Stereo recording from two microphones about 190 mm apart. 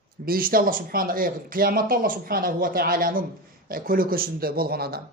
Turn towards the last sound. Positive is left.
turn(degrees=-55)  # may be behind; listen again after turning